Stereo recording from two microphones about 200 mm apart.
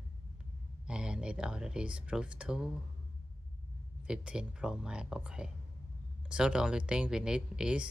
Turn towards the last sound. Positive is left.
turn(degrees=-5)  # may be behind; listen again after turning